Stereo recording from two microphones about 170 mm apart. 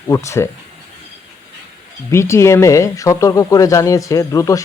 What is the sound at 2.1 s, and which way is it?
Speech, 15° left (ahead or behind).